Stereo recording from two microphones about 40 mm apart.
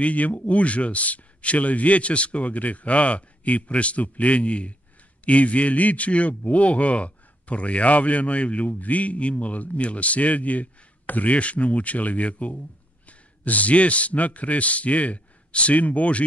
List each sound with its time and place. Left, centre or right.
0.0 s a man's voice: left